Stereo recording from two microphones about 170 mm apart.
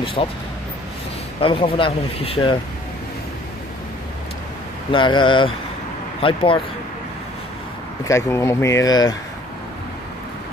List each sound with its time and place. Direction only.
0.0 s speech: 30° left (ahead or behind)
1.4 s speech: 30° left (ahead or behind)
4.9 s speech: 30° left (ahead or behind)
8.1 s speech: 15° left (ahead or behind)